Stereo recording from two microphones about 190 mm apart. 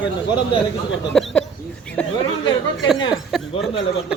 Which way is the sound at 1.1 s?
5° left (ahead or behind).